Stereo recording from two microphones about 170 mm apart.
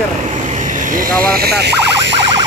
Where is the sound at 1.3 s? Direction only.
70° right (ahead or behind); by 2.2 s 90° right.